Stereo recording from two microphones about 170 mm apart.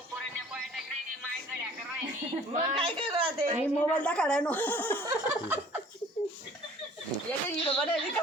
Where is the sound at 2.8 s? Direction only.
30° right (ahead or behind).